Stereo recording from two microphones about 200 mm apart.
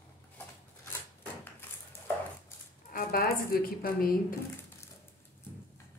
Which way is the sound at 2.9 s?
45° left (ahead or behind).